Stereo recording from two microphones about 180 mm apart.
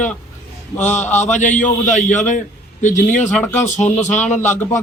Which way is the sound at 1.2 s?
40° left (ahead or behind).